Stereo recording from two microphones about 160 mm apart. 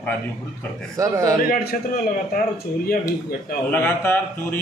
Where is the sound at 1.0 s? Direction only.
20° right (ahead or behind).